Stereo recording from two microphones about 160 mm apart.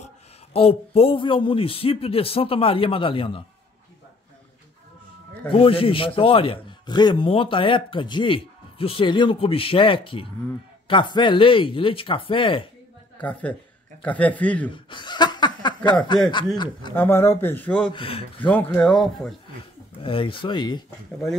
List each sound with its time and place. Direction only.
0.0 s speech: 40° left (ahead or behind)
5.5 s speech: 35° left (ahead or behind)
13.2 s speech: 10° left (ahead or behind)
14.9 s snicker: 30° left (ahead or behind)
16.5 s speech: 30° left (ahead or behind)
16.9 s speech: 15° left (ahead or behind)
17.9 s speech: 35° left (ahead or behind)
18.4 s speech: 10° left (ahead or behind)
20.0 s speech: 35° left (ahead or behind)